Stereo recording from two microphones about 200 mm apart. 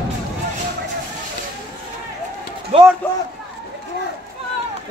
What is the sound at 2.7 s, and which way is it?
Speech, 30° right (ahead or behind).